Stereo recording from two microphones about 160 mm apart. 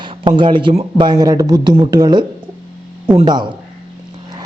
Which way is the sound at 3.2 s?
25° right (ahead or behind).